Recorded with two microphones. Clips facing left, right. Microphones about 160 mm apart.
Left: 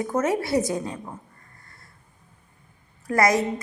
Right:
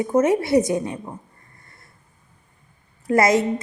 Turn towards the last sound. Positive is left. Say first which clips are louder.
# right 3 dB
turn(degrees=-25)  # may be behind; listen again after turning